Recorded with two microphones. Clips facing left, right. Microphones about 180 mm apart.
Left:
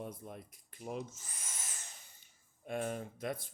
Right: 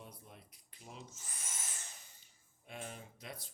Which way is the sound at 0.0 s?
50° left (ahead or behind).